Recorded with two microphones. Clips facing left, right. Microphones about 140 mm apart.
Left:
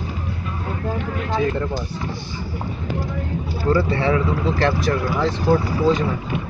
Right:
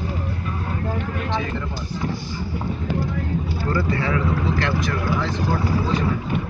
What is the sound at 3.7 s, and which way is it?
Speech, 25° left (ahead or behind).